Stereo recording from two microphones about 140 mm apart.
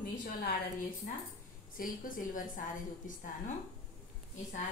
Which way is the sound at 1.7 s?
80° left.